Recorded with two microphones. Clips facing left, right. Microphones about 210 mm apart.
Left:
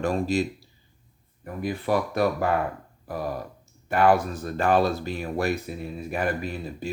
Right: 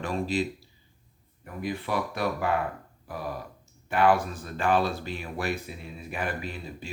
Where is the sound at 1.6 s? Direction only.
45° left (ahead or behind).